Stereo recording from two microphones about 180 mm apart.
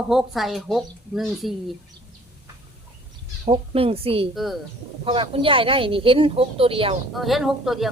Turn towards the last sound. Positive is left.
turn(degrees=0)  # may be behind; listen again after turning